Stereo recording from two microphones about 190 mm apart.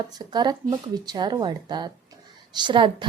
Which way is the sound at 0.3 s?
20° right (ahead or behind).